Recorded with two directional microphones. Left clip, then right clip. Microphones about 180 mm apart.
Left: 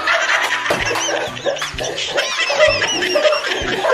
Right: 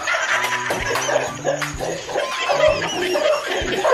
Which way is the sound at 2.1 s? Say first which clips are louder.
Left 3 dB; 55° left (ahead or behind).